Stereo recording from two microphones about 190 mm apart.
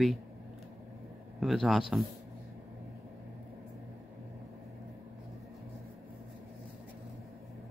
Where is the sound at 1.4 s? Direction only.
Centre (ahead or behind).